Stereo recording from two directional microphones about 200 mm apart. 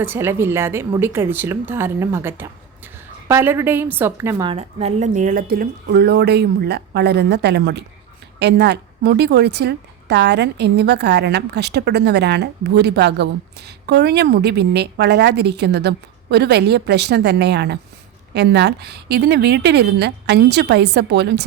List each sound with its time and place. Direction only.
0.0 s speech: 10° right (ahead or behind)
4.4 s a woman's voice: 30° right (ahead or behind); by 21.4 s 55° right (ahead or behind)